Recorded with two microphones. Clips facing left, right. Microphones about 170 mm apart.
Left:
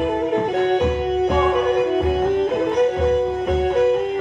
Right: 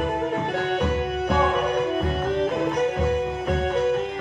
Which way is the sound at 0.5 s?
15° left (ahead or behind).